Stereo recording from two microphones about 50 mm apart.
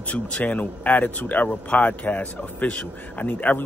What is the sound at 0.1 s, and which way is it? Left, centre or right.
Speech, left.